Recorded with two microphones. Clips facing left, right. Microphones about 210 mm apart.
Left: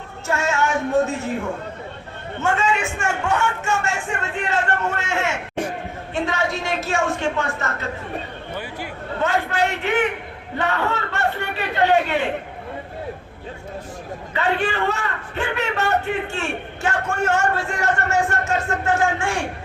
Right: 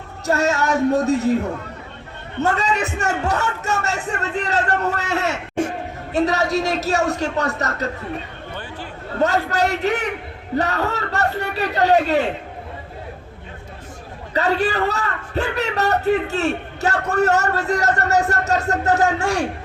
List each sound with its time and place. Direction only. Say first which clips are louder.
0.3 s a man's voice: right 3 dB; 40° right (ahead or behind)
2.4 s a man's voice: right 1 dB; 40° right (ahead or behind)
9.2 s a man's voice: right 2 dB; 40° right (ahead or behind)
14.3 s a man's voice: right 3 dB; 40° right (ahead or behind)